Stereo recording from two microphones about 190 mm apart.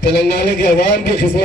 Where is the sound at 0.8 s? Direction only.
65° left (ahead or behind).